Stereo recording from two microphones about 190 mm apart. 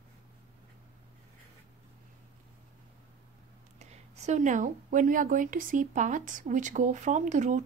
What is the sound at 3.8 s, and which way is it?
A woman's voice, 35° right (ahead or behind).